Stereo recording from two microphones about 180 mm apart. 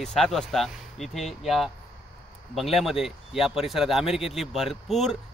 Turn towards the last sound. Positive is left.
turn(degrees=0)  # may be behind; listen again after turning